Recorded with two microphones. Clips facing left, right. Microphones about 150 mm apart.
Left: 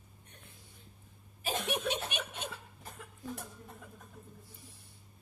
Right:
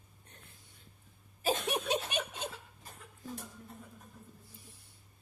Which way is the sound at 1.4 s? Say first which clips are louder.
Right 2 dB; 40° right (ahead or behind).